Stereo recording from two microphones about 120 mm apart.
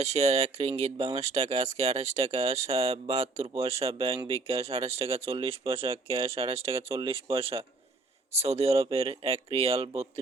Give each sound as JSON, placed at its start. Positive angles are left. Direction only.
{"t": 0.0, "sound": "speech", "side_deg": -65}